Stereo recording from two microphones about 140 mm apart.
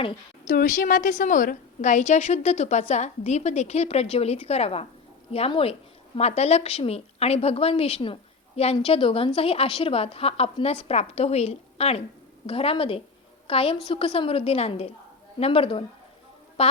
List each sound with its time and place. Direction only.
0.4 s a woman's voice: 75° left (ahead or behind); by 15.8 s 40° left (ahead or behind)